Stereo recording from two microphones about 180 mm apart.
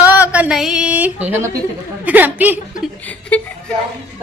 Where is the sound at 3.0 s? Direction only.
10° left (ahead or behind).